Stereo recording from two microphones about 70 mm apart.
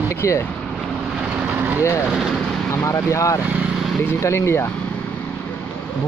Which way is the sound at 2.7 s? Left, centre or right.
Left.